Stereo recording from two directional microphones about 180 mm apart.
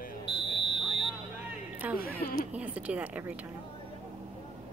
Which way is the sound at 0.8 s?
Centre (ahead or behind).